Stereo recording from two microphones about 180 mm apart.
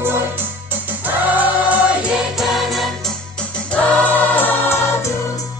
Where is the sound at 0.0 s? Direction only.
10° right (ahead or behind).